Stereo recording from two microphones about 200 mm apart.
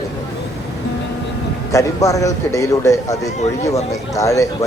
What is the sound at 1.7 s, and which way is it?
Speech, 15° left (ahead or behind).